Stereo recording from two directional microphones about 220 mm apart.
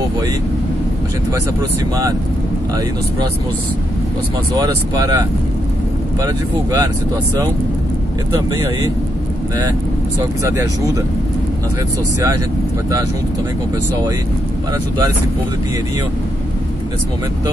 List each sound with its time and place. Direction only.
4.6 s speech: 15° right (ahead or behind)
10.4 s speech: 15° right (ahead or behind)